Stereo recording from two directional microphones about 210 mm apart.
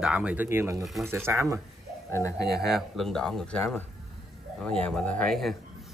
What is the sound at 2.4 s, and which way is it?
Speech, 50° right (ahead or behind).